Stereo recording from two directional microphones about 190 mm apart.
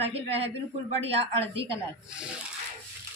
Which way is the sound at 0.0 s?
30° right (ahead or behind).